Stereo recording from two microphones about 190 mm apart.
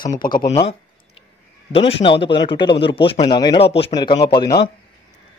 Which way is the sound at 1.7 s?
30° left (ahead or behind).